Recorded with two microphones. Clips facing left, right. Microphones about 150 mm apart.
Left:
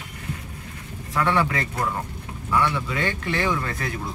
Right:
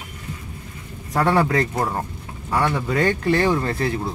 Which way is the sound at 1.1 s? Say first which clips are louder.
Right 4 dB; 40° right (ahead or behind).